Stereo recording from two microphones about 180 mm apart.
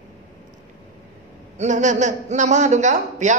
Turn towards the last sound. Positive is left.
turn(degrees=-40)  # may be behind; listen again after turning